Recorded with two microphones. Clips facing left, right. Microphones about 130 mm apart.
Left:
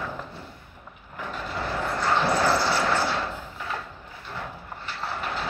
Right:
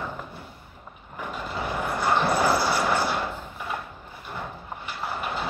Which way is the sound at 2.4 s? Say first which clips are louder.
Even; 10° right (ahead or behind).